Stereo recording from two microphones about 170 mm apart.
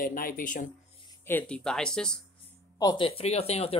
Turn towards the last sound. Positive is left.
turn(degrees=35)  # may be behind; listen again after turning